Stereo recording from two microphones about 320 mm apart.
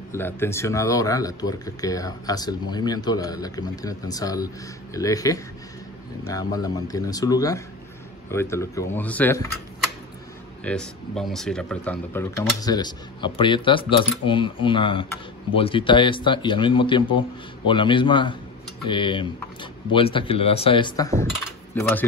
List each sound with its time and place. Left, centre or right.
0.1 s speech: centre
10.6 s speech: centre